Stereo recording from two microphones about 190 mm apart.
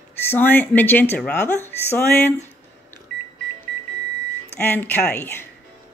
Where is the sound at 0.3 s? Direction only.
10° left (ahead or behind).